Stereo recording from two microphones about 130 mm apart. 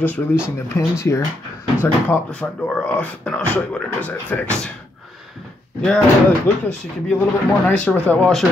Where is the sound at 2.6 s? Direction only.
10° left (ahead or behind).